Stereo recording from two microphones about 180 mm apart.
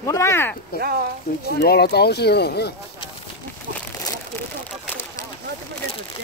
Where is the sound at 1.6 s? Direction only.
65° left (ahead or behind).